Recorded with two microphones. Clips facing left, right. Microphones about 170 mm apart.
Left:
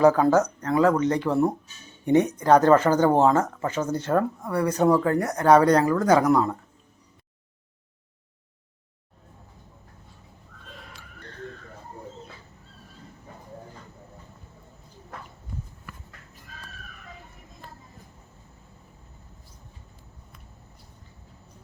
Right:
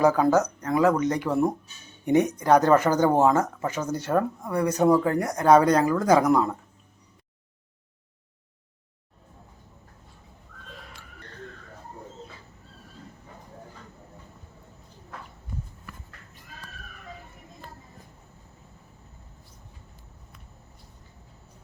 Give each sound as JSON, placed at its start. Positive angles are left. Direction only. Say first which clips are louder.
{"t": 0.0, "sound": "speech", "louder": "left 2 dB", "side_deg": -10}